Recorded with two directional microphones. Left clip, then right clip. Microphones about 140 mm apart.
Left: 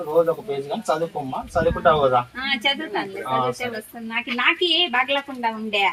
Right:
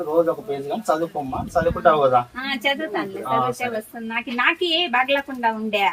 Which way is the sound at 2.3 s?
15° right (ahead or behind).